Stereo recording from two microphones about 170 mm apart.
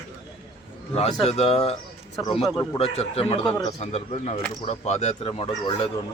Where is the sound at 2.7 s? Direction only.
35° left (ahead or behind).